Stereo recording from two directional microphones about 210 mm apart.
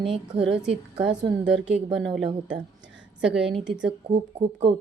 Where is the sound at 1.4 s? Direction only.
5° right (ahead or behind).